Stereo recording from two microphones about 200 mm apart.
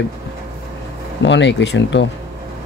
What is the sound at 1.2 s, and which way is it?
Speech, 65° left (ahead or behind).